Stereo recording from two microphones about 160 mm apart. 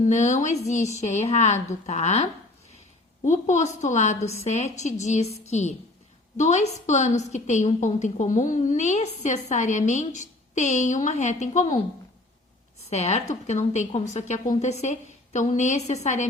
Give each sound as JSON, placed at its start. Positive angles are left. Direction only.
{"t": 0.0, "sound": "a woman's voice", "side_deg": 50}
{"t": 3.2, "sound": "a woman's voice", "side_deg": 50}
{"t": 12.9, "sound": "a woman's voice", "side_deg": 45}